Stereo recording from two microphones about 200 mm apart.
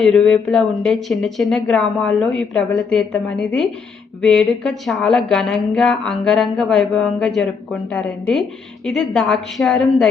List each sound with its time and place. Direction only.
0.0 s a woman's voice: 5° left (ahead or behind)